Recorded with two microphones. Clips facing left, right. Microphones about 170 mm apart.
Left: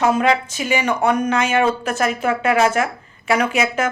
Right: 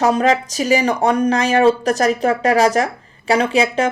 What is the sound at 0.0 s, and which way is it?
Speech, 35° right (ahead or behind).